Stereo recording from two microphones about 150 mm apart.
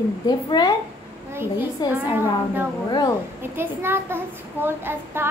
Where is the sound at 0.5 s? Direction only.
30° left (ahead or behind).